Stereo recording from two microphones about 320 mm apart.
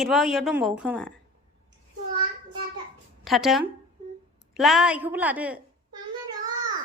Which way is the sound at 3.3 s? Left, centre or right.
Centre.